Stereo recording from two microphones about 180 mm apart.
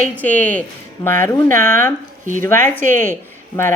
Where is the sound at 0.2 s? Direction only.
10° left (ahead or behind).